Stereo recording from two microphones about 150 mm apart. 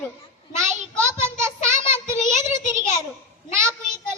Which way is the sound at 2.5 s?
20° right (ahead or behind).